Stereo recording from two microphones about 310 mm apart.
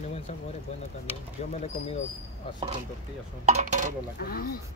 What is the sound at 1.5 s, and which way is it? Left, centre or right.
Speech, left.